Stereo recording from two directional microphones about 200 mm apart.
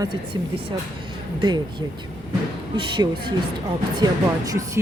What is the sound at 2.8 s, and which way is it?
Speech, 25° right (ahead or behind).